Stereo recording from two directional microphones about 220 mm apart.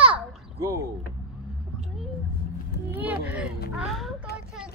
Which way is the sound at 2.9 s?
5° right (ahead or behind).